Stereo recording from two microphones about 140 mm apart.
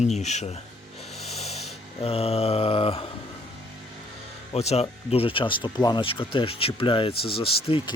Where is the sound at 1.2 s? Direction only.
50° left (ahead or behind).